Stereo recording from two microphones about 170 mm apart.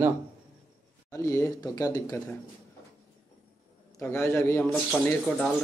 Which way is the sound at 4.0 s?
15° left (ahead or behind).